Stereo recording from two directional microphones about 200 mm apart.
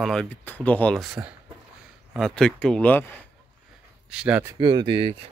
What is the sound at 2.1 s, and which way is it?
Speech, 5° left (ahead or behind).